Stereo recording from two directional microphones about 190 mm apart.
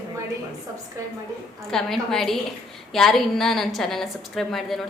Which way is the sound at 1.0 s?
15° right (ahead or behind).